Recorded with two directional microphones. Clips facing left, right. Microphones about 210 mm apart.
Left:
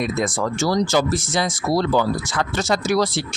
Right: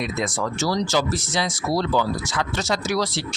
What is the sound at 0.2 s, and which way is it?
Speech, 50° left (ahead or behind).